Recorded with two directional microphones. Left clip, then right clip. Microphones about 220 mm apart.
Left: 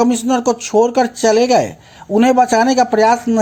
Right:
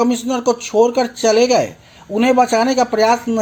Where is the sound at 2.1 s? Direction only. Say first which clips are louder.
Left 2 dB; 15° left (ahead or behind).